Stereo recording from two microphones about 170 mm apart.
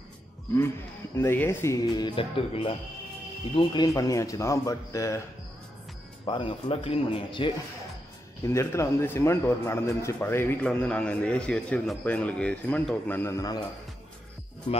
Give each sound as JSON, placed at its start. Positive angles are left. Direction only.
{"t": 1.1, "sound": "speech", "side_deg": 15}
{"t": 6.2, "sound": "speech", "side_deg": 30}
{"t": 8.5, "sound": "a man's voice", "side_deg": 15}